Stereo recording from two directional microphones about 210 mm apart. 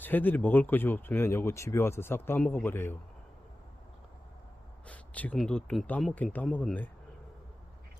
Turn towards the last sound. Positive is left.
turn(degrees=10)  # may be behind; listen again after turning